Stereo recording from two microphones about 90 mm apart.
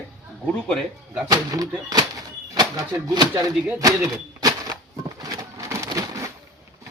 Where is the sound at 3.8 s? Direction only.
40° right (ahead or behind).